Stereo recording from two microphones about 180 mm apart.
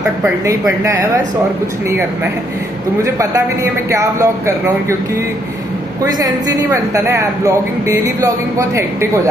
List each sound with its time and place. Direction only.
0.5 s a woman's voice: 20° right (ahead or behind)
3.0 s a woman's voice: 15° right (ahead or behind)
6.2 s a woman's voice: 20° right (ahead or behind)